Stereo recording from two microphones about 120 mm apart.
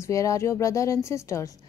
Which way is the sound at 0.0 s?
25° left (ahead or behind).